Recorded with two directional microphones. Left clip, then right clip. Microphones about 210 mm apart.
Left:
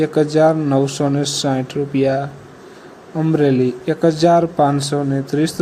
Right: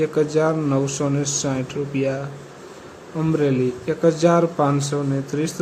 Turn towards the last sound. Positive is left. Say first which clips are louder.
# left 5 dB
turn(degrees=20)  # may be behind; listen again after turning